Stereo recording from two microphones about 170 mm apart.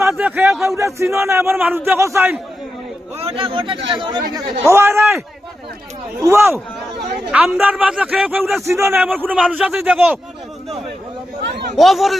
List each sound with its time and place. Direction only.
0.0 s a sound: 10° right (ahead or behind)
0.6 s a man's voice: 15° right (ahead or behind)
3.2 s a man's voice: 35° right (ahead or behind); by 5.2 s 15° right (ahead or behind)
6.2 s a man's voice: 15° right (ahead or behind)
7.3 s a man's voice: 5° right (ahead or behind)
11.8 s speech: centre (ahead or behind)